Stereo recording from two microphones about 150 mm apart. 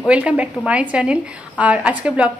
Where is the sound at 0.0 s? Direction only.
10° right (ahead or behind).